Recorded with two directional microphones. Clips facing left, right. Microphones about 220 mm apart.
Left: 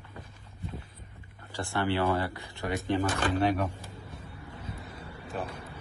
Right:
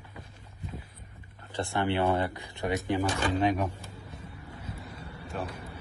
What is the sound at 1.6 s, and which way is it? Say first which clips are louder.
Speech: right 1 dB; 20° right (ahead or behind).